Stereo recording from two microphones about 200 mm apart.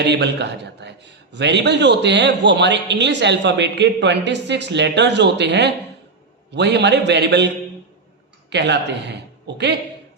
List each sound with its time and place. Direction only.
0.0 s a man's voice: 60° right (ahead or behind)